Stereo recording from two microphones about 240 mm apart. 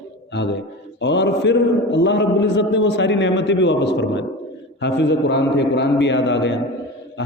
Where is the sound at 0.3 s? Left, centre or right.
Left.